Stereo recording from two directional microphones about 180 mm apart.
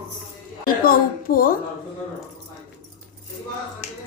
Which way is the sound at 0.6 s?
55° left (ahead or behind).